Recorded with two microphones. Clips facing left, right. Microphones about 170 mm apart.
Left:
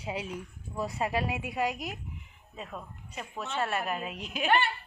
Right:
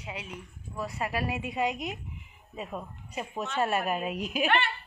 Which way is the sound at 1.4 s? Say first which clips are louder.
Right 1 dB; 5° left (ahead or behind).